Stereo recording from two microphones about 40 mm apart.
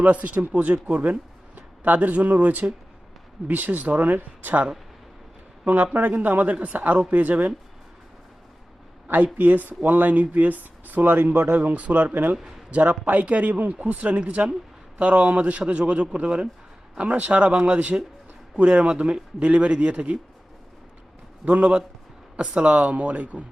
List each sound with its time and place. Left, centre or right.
0.0 s speech: right
5.6 s speech: right
9.0 s speech: right
11.5 s a man's voice: right
21.4 s a man's voice: right